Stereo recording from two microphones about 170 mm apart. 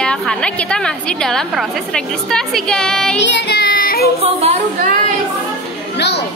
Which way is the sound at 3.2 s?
90° left.